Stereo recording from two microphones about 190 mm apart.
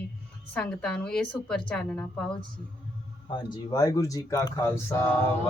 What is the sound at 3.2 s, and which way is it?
Speech, 25° left (ahead or behind).